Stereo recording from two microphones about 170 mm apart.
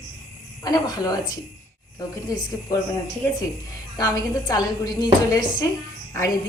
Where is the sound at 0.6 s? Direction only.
20° left (ahead or behind).